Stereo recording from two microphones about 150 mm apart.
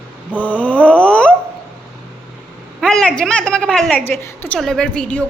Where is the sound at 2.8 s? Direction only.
5° left (ahead or behind).